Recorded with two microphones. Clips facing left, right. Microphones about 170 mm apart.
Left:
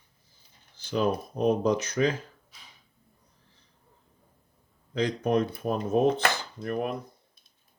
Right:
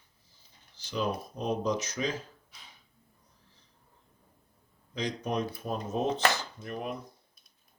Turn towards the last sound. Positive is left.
turn(degrees=55)  # may be behind; listen again after turning